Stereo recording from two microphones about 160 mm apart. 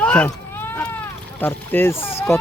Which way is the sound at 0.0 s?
10° left (ahead or behind).